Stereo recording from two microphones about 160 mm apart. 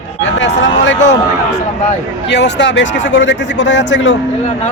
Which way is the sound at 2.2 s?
90° left.